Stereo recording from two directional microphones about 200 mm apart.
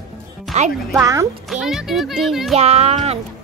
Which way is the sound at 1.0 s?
15° right (ahead or behind).